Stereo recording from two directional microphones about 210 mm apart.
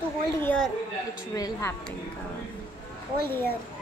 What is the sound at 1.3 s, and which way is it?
Speech, 15° left (ahead or behind).